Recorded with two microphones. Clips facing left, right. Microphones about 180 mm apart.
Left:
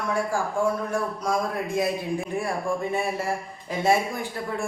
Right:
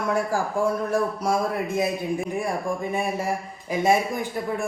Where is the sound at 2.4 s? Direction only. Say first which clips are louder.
Even; 15° right (ahead or behind).